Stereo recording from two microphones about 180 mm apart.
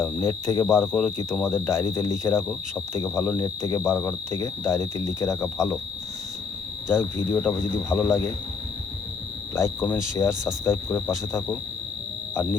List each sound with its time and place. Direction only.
0.0 s cricket: 15° left (ahead or behind)
0.7 s speech: centre (ahead or behind)
1.5 s speech: 15° left (ahead or behind)
6.9 s speech: 10° left (ahead or behind)
9.6 s speech: 10° left (ahead or behind)